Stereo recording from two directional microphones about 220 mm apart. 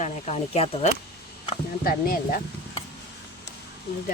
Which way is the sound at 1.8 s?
40° left (ahead or behind).